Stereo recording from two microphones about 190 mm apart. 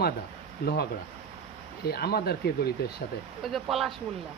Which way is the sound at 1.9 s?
55° left (ahead or behind).